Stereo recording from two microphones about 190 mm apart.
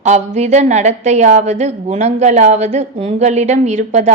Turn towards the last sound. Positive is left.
turn(degrees=-40)  # may be behind; listen again after turning